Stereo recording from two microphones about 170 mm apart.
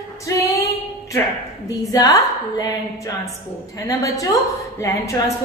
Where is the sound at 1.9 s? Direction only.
20° left (ahead or behind).